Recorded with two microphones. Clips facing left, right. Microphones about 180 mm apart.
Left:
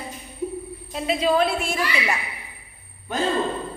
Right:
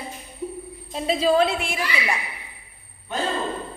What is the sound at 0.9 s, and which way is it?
Speech, 30° right (ahead or behind).